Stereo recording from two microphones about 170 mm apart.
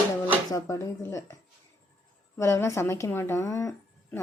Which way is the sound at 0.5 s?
20° left (ahead or behind).